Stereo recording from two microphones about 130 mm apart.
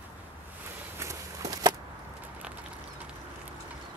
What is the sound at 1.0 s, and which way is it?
Walk, 25° right (ahead or behind).